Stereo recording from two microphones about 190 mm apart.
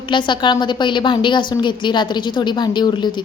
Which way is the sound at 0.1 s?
25° left (ahead or behind).